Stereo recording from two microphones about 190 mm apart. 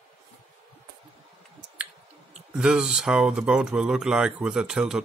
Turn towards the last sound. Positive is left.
turn(degrees=-5)  # may be behind; listen again after turning